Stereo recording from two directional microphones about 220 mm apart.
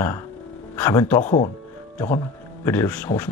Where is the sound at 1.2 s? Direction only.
35° left (ahead or behind).